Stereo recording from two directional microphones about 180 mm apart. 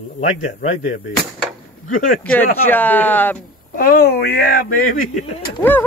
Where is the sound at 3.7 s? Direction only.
55° left (ahead or behind).